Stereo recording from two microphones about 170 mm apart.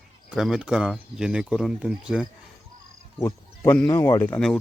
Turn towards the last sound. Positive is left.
turn(degrees=5)  # may be behind; listen again after turning